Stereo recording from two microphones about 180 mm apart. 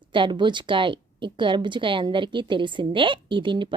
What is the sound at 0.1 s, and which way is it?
A woman's voice, 25° right (ahead or behind).